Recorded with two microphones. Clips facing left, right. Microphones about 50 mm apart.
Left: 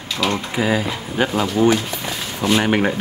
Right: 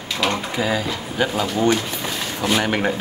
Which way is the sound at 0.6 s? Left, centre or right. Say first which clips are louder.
Left 2 dB; centre.